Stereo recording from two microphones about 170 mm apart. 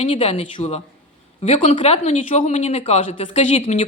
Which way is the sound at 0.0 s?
35° left (ahead or behind).